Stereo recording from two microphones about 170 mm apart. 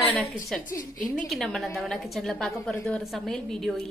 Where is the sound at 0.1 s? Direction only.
Centre (ahead or behind).